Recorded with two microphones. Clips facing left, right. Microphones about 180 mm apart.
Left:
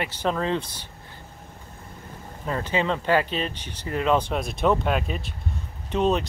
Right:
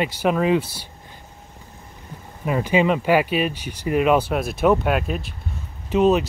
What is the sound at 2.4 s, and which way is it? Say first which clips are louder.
Speech: right 6 dB; 10° right (ahead or behind).